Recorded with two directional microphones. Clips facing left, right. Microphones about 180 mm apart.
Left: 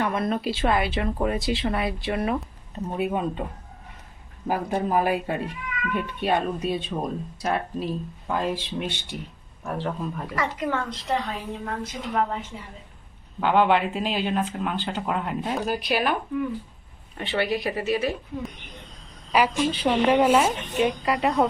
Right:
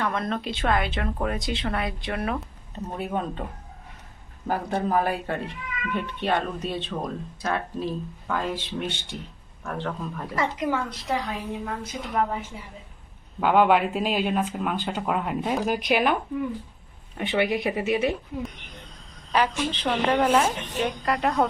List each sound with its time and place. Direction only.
0.0 s speech: 10° left (ahead or behind)
4.4 s speech: 10° left (ahead or behind)
10.3 s speech: 25° right (ahead or behind)
10.7 s speech: 5° right (ahead or behind)
13.4 s speech: 5° right (ahead or behind)
15.7 s speech: 15° right (ahead or behind)
17.2 s speech: 15° right (ahead or behind)
19.3 s speech: 10° left (ahead or behind)